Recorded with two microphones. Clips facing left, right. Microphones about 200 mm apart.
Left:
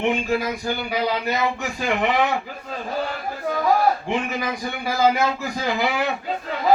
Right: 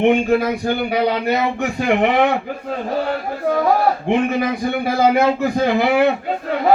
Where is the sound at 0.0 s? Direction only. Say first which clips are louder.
Right 7 dB; 60° right (ahead or behind).